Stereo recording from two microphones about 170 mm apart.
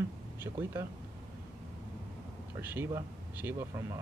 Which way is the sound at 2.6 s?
10° right (ahead or behind).